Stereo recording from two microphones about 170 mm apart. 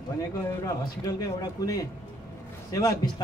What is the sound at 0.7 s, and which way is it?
Speech, 20° left (ahead or behind).